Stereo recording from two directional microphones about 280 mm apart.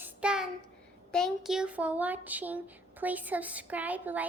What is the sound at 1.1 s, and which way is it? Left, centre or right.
A woman's voice, centre.